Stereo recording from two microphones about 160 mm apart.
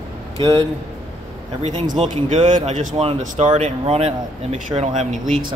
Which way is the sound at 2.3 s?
45° right (ahead or behind).